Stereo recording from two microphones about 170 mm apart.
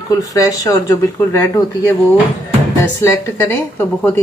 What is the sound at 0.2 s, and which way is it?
Speech, 20° left (ahead or behind).